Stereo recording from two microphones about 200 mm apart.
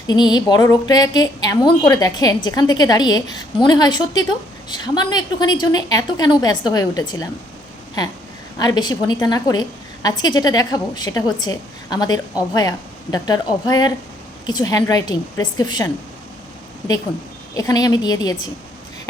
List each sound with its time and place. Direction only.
0.1 s a woman's voice: 20° left (ahead or behind)
8.5 s a woman's voice: 20° left (ahead or behind)
17.6 s a woman's voice: 20° left (ahead or behind)